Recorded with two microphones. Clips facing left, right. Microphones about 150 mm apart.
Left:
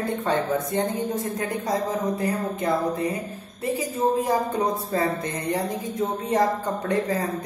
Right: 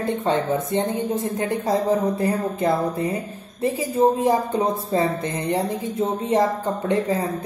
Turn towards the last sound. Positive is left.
turn(degrees=-25)  # may be behind; listen again after turning